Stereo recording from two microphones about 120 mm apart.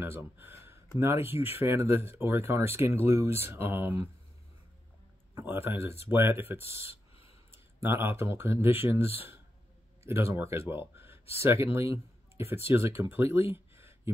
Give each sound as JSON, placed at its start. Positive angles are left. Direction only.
{"t": 0.0, "sound": "speech", "side_deg": -15}
{"t": 5.3, "sound": "speech", "side_deg": -20}
{"t": 7.2, "sound": "a sound", "side_deg": 55}
{"t": 7.8, "sound": "speech", "side_deg": -20}
{"t": 10.0, "sound": "speech", "side_deg": -20}